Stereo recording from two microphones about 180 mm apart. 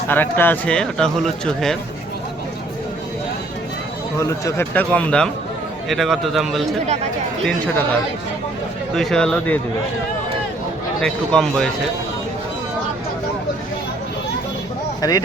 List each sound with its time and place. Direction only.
0.1 s speech: 10° left (ahead or behind)
4.2 s speech: 15° left (ahead or behind); by 6.7 s centre (ahead or behind)
6.8 s speech: 40° right (ahead or behind)
9.0 s speech: 5° left (ahead or behind)
11.0 s speech: 5° left (ahead or behind)
15.0 s speech: 20° left (ahead or behind)